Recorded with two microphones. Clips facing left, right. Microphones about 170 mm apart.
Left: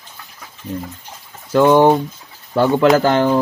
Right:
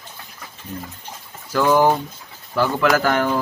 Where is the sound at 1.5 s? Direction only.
25° left (ahead or behind).